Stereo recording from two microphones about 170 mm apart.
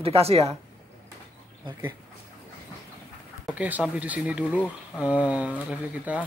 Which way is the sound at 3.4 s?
10° right (ahead or behind).